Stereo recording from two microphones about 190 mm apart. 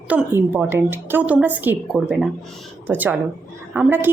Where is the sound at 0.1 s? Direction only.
10° right (ahead or behind).